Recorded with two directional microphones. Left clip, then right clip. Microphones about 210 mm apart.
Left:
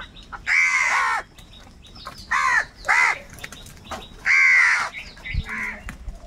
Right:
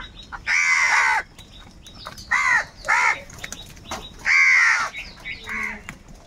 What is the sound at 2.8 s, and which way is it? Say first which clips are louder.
Crow: left 1 dB; 35° left (ahead or behind).